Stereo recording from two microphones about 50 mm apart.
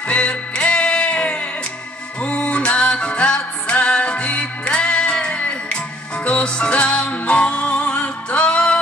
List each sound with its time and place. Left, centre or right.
0.1 s music: left